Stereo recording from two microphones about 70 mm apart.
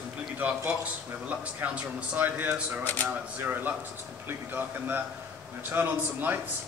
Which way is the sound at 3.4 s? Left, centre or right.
Right.